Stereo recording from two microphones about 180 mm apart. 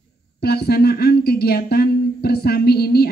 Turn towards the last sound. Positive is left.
turn(degrees=60)  # may be behind; listen again after turning